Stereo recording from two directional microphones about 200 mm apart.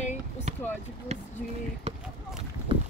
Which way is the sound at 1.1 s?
30° right (ahead or behind).